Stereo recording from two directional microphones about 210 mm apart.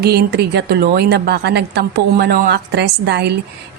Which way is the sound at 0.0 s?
50° right (ahead or behind).